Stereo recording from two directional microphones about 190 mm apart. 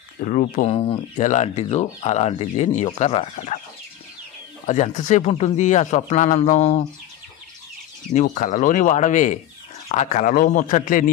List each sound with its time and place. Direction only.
0.2 s speech: 40° left (ahead or behind)
4.6 s speech: 40° left (ahead or behind)
8.1 s a man's voice: 40° left (ahead or behind)